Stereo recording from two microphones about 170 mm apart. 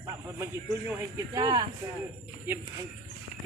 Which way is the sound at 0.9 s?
20° right (ahead or behind).